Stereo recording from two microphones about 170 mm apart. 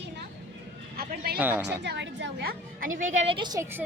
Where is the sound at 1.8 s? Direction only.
90° right; by 3.6 s 25° right (ahead or behind).